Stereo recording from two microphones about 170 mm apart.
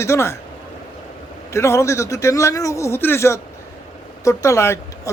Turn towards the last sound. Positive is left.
turn(degrees=15)  # may be behind; listen again after turning